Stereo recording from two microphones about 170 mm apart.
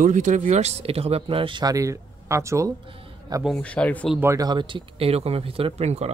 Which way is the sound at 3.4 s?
5° left (ahead or behind).